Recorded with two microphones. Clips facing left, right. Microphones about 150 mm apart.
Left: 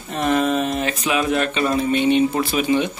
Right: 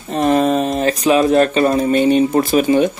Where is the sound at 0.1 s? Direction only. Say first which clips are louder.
Right 5 dB; 35° right (ahead or behind).